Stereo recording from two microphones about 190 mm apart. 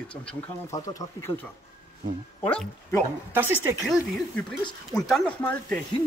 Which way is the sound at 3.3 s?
10° right (ahead or behind).